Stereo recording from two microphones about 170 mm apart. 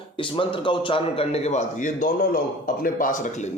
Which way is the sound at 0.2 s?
30° left (ahead or behind).